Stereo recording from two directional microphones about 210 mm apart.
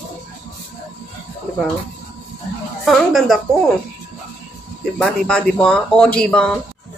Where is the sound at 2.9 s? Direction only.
Centre (ahead or behind).